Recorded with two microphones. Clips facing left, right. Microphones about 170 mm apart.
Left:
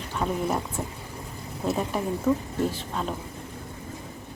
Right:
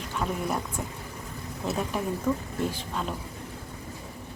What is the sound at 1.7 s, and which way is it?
Speech, 10° left (ahead or behind).